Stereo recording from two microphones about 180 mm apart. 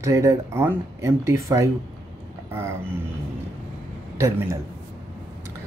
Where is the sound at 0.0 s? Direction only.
20° right (ahead or behind).